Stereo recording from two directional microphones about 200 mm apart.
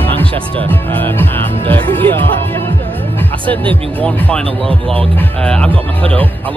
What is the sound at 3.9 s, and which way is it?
Speech, 5° left (ahead or behind).